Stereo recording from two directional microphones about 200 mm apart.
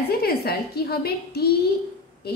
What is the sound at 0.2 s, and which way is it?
A woman's voice, 50° left (ahead or behind).